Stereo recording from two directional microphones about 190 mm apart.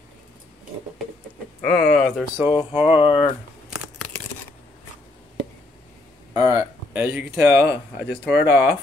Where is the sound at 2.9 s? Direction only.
30° left (ahead or behind).